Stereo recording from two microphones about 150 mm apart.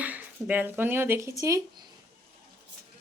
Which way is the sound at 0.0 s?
10° right (ahead or behind).